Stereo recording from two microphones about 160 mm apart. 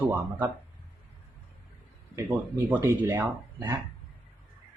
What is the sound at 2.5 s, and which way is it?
Speech, 15° right (ahead or behind).